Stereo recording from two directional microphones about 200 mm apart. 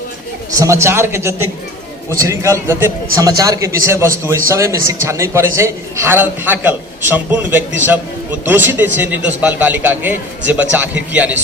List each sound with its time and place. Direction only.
0.5 s a man's voice: 15° right (ahead or behind)